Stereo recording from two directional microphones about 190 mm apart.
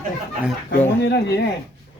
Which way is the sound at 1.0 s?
60° left (ahead or behind).